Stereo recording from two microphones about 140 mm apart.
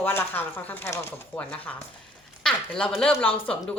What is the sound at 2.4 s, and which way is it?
Speech, 5° left (ahead or behind).